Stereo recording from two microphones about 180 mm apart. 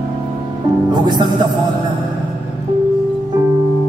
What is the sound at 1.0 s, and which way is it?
Music, 25° right (ahead or behind).